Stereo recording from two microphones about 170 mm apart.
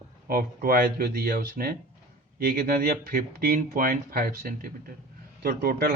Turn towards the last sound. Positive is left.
turn(degrees=-60)  # may be behind; listen again after turning